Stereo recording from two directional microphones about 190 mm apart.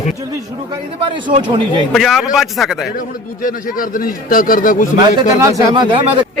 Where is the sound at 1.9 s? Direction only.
Centre (ahead or behind).